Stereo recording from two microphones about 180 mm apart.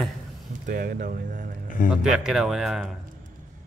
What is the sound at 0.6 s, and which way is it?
Speech, 50° right (ahead or behind).